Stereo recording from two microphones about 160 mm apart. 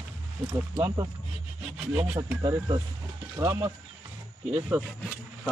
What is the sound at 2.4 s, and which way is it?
Speech, 25° right (ahead or behind).